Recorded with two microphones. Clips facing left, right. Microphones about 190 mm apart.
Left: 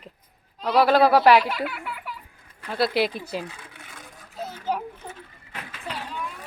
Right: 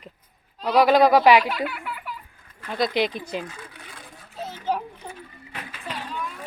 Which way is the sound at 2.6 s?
5° left (ahead or behind).